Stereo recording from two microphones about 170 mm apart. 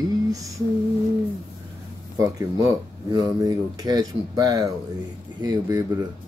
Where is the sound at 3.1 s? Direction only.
20° right (ahead or behind).